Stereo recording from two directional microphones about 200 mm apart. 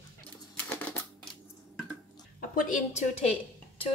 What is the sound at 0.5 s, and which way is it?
Typewriter, 5° left (ahead or behind).